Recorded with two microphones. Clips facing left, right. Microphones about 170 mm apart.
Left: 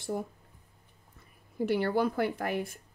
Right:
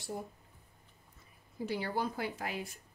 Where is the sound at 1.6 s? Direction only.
65° left (ahead or behind).